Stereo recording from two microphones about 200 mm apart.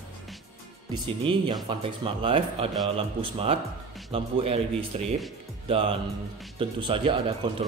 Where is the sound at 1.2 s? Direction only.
25° right (ahead or behind).